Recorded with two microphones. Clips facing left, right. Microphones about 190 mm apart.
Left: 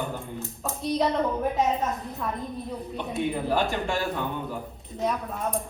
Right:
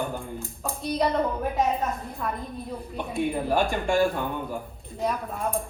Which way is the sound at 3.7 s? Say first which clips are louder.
Right 5 dB; 50° right (ahead or behind).